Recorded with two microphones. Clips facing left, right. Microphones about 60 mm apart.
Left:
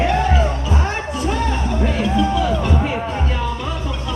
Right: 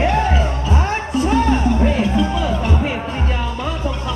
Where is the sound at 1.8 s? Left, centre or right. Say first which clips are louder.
Right 2 dB; right.